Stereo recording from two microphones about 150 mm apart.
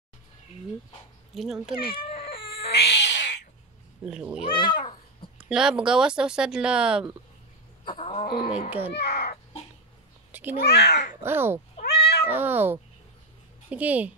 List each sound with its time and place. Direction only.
1.3 s speech: centre (ahead or behind)
1.9 s cat: 40° left (ahead or behind)
4.0 s speech: 5° right (ahead or behind)
4.5 s cat: 30° left (ahead or behind)
5.5 s speech: 5° right (ahead or behind)
7.8 s roaring cats: 35° left (ahead or behind)
8.6 s speech: 10° right (ahead or behind)
8.9 s crow: 90° left
10.6 s speech: 90° left
11.2 s speech: 15° right (ahead or behind)
11.8 s cat: 90° left
12.3 s speech: 15° right (ahead or behind)